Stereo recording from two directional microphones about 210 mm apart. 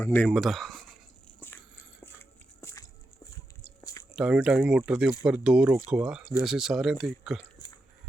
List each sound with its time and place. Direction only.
0.0 s speech: 10° left (ahead or behind)
1.4 s biting: 10° left (ahead or behind)
3.8 s a sound: 15° left (ahead or behind)
4.1 s speech: 5° right (ahead or behind)